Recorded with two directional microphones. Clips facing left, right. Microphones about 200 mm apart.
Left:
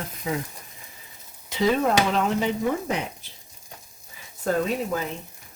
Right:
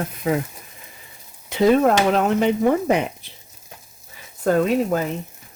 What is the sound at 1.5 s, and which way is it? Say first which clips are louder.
Speech: right 6 dB; 55° right (ahead or behind).